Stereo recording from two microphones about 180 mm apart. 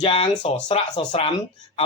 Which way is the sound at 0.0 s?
35° left (ahead or behind).